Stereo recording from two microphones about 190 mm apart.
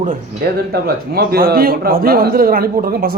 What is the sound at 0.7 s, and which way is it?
A man's voice, 55° right (ahead or behind).